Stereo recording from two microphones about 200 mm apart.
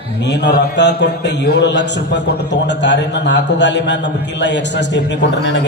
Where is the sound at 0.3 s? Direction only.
60° left (ahead or behind).